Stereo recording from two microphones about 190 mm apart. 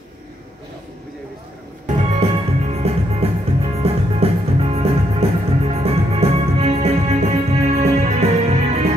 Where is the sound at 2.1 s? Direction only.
35° right (ahead or behind).